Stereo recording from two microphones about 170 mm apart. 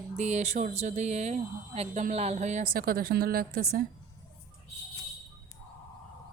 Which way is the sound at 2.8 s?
60° right (ahead or behind).